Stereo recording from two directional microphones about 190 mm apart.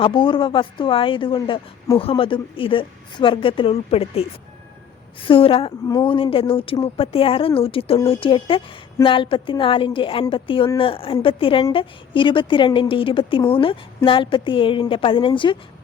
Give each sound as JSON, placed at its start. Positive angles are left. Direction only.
{"t": 0.0, "sound": "a woman's voice", "side_deg": 25}